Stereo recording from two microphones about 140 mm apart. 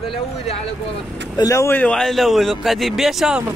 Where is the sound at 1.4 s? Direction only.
20° left (ahead or behind).